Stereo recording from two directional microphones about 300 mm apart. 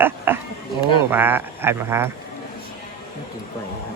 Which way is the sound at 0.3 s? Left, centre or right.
Centre.